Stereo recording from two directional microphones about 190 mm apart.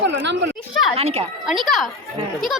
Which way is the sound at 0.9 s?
30° right (ahead or behind).